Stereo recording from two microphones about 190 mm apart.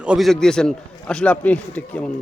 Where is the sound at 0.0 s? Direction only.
5° right (ahead or behind).